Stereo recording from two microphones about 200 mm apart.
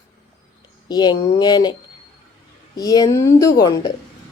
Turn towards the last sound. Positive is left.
turn(degrees=20)  # may be behind; listen again after turning